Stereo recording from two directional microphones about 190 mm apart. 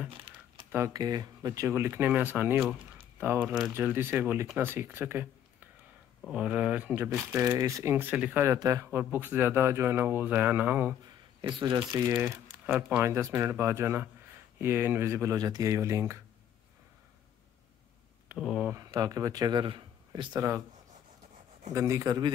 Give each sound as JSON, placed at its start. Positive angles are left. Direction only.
{"t": 0.7, "sound": "speech", "side_deg": -15}
{"t": 11.4, "sound": "speech", "side_deg": -25}
{"t": 12.1, "sound": "speech", "side_deg": -10}
{"t": 18.3, "sound": "speech", "side_deg": -5}
{"t": 18.8, "sound": "speech", "side_deg": -20}
{"t": 21.7, "sound": "speech", "side_deg": -15}